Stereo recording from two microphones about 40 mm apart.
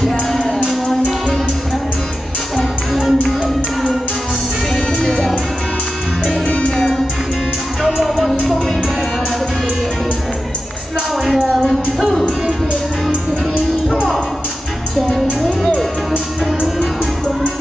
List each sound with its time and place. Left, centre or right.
0.1 s music: centre
2.5 s music: centre
6.4 s music: left
7.8 s music: centre
12.0 s music: centre